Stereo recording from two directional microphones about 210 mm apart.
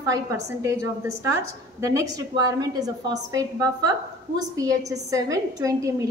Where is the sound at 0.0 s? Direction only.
15° right (ahead or behind).